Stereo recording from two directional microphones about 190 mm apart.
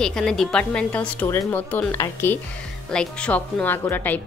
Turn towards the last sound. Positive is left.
turn(degrees=10)  # may be behind; listen again after turning